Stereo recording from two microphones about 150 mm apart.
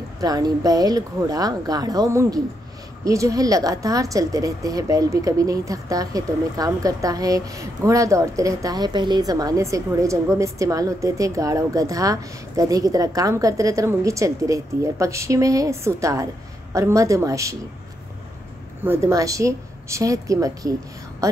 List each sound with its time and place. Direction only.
0.2 s a woman's voice: 25° right (ahead or behind)
18.9 s a woman's voice: 20° right (ahead or behind)